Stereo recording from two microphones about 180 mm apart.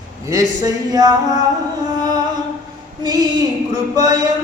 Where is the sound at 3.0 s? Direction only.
20° right (ahead or behind).